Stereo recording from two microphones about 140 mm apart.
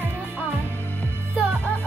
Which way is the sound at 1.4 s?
10° right (ahead or behind).